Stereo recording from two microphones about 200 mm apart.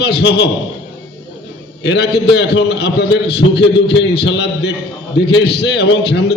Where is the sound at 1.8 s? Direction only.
60° left (ahead or behind).